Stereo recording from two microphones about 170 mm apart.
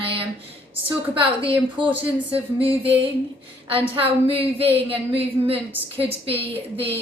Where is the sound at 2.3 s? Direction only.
35° right (ahead or behind).